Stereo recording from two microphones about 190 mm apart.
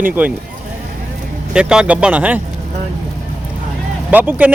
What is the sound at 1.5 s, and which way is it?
Speech, 5° right (ahead or behind).